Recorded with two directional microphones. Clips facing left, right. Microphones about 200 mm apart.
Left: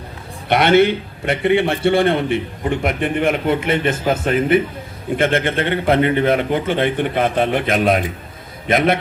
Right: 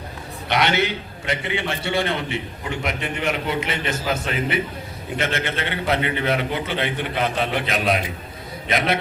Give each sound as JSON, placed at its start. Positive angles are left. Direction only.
{"t": 0.5, "sound": "a man's voice", "side_deg": 55}